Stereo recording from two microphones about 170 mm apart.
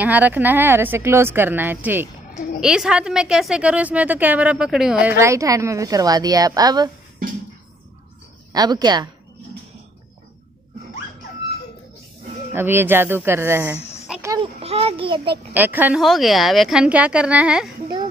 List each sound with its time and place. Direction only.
0.0 s a woman's voice: 10° right (ahead or behind)
5.2 s a woman's voice: 20° right (ahead or behind)
8.5 s a woman's voice: 25° right (ahead or behind)
12.5 s speech: 15° right (ahead or behind)
14.2 s a sound: 20° right (ahead or behind)
14.6 s a child's voice: 35° right (ahead or behind)
15.5 s a woman's voice: 10° right (ahead or behind)